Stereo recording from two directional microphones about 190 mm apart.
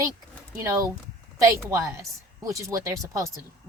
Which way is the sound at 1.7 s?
15° right (ahead or behind).